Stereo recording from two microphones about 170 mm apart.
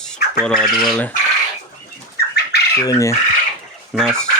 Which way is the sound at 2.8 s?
20° left (ahead or behind).